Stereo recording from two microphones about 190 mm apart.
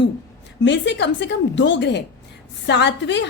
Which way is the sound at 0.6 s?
65° left (ahead or behind).